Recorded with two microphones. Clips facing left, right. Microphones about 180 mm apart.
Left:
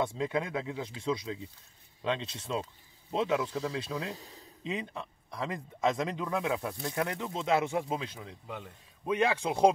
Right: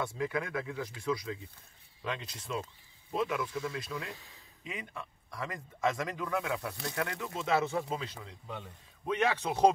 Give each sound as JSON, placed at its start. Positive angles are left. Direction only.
{"t": 0.2, "sound": "speech", "side_deg": 20}
{"t": 4.6, "sound": "speech", "side_deg": 25}